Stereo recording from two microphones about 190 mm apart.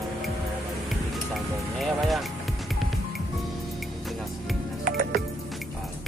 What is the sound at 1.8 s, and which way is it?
Music, centre (ahead or behind).